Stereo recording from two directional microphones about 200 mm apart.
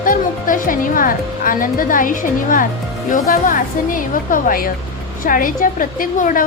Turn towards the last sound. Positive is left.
turn(degrees=40)  # may be behind; listen again after turning